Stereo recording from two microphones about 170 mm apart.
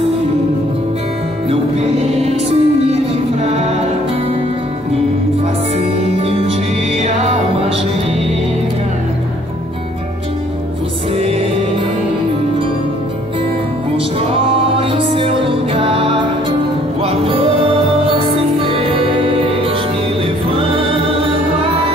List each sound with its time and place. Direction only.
2.3 s music: 40° right (ahead or behind)
7.0 s music: 40° right (ahead or behind)
14.8 s music: 30° right (ahead or behind)
20.4 s music: 30° right (ahead or behind)